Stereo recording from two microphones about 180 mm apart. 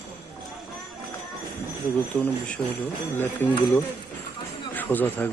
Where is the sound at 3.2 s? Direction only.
10° left (ahead or behind).